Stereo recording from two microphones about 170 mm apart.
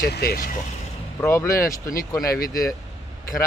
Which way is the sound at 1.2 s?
15° left (ahead or behind).